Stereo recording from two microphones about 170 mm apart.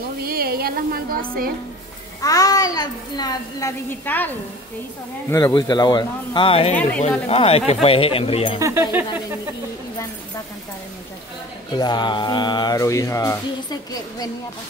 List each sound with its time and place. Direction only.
0.2 s a sound: 60° right (ahead or behind)
2.2 s music: 20° left (ahead or behind)
5.3 s music: 25° left (ahead or behind)
6.7 s speech: 10° left (ahead or behind)
7.1 s speech: 35° left (ahead or behind)
8.5 s speech: 15° right (ahead or behind)
11.7 s music: 25° left (ahead or behind)